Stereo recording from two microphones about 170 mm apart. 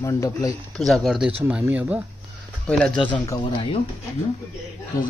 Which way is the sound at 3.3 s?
30° left (ahead or behind).